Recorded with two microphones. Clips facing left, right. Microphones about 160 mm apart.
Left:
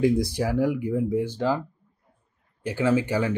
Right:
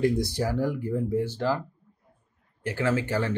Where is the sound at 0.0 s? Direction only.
10° left (ahead or behind).